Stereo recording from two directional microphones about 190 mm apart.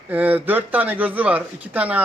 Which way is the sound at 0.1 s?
10° right (ahead or behind).